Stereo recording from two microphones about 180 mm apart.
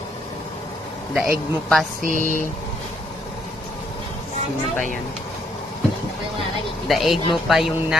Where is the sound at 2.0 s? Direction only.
45° right (ahead or behind).